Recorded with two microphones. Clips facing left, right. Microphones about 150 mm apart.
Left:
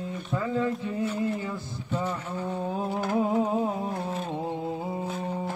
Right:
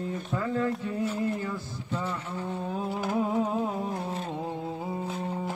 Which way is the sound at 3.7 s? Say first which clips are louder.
Left 1 dB; 15° left (ahead or behind).